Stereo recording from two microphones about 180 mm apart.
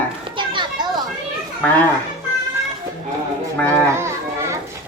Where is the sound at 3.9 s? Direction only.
15° right (ahead or behind).